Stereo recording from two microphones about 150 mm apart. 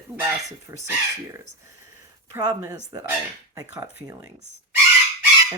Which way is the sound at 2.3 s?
20° right (ahead or behind).